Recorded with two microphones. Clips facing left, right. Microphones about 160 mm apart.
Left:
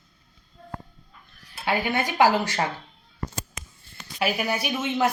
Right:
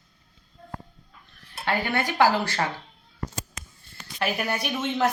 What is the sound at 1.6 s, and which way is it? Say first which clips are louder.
Speech: left 1 dB; 15° left (ahead or behind).